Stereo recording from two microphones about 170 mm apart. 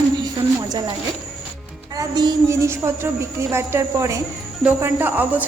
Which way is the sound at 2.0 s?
20° right (ahead or behind).